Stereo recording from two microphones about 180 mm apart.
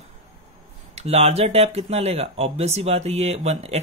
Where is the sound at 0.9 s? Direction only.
35° right (ahead or behind).